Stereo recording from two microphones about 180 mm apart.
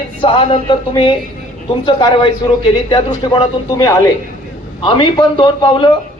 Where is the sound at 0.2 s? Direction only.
30° left (ahead or behind).